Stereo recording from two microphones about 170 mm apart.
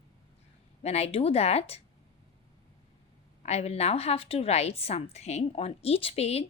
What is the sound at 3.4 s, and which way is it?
A woman's voice, 40° left (ahead or behind).